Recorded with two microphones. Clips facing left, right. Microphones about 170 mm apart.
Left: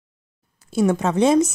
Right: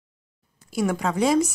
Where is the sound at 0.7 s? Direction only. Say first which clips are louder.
Left 5 dB; 20° left (ahead or behind).